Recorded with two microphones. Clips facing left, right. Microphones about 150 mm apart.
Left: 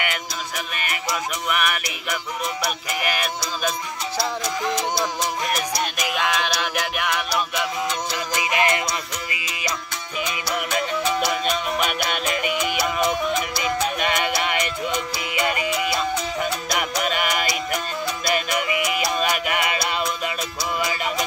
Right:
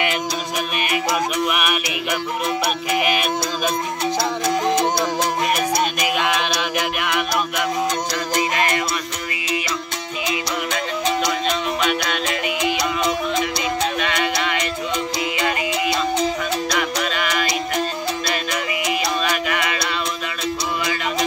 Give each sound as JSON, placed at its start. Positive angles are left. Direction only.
{"t": 1.5, "sound": "music", "side_deg": -10}
{"t": 4.5, "sound": "music", "side_deg": -55}
{"t": 7.0, "sound": "a sound", "side_deg": -5}
{"t": 8.5, "sound": "music", "side_deg": 20}